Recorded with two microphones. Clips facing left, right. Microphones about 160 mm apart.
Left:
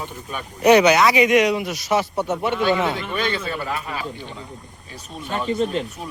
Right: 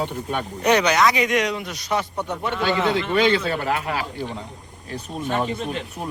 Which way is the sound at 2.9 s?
90° right.